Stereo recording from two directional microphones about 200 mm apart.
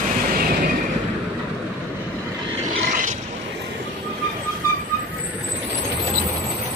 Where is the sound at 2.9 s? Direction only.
40° right (ahead or behind).